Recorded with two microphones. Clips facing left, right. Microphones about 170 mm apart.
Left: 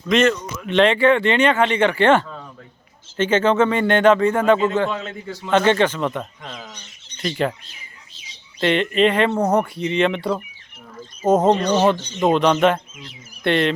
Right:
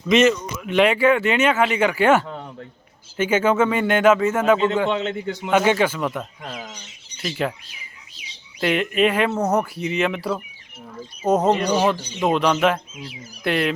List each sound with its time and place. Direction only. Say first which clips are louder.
0.0 s speech: right 1 dB; 5° right (ahead or behind)
2.2 s a sound: right 3 dB; 25° right (ahead or behind)
3.2 s speech: left 2 dB; 10° right (ahead or behind)
4.9 s a man's voice: right 5 dB; 25° right (ahead or behind)
5.3 s speech: left 2 dB; 15° right (ahead or behind)
6.7 s bird: right 1 dB; 5° right (ahead or behind)
8.6 s speech: left 2 dB; 5° right (ahead or behind)
11.4 s speech: left 2 dB; 10° right (ahead or behind)